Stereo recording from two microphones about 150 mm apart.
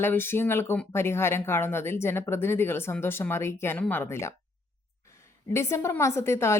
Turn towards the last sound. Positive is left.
turn(degrees=15)  # may be behind; listen again after turning